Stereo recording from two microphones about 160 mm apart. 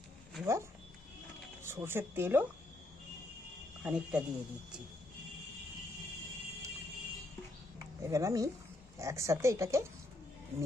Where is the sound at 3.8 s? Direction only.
5° right (ahead or behind).